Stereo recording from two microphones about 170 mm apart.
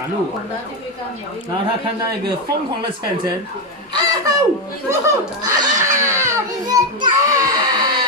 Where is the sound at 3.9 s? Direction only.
25° right (ahead or behind).